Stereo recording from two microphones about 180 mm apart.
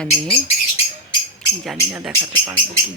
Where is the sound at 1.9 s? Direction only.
10° right (ahead or behind).